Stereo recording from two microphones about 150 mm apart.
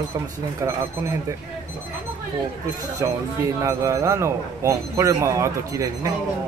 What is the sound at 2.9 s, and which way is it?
Speech, 20° right (ahead or behind).